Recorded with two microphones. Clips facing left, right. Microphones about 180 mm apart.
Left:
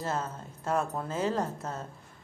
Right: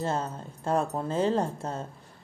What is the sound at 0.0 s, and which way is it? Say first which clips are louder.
Speech: right 3 dB; 30° right (ahead or behind).